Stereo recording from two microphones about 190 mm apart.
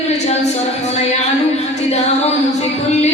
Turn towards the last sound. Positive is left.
turn(degrees=35)  # may be behind; listen again after turning